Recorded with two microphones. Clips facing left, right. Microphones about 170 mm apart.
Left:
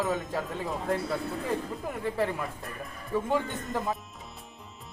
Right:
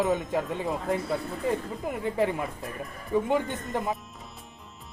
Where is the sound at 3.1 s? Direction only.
15° right (ahead or behind).